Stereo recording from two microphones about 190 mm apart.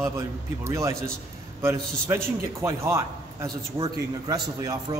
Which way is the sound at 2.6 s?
15° right (ahead or behind).